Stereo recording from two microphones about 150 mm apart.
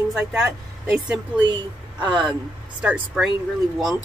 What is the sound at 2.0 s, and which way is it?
Speech, 30° right (ahead or behind).